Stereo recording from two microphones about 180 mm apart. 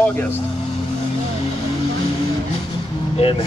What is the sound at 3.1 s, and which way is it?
Speech, 35° left (ahead or behind).